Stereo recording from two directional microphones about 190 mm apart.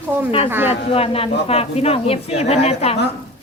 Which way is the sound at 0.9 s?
30° left (ahead or behind).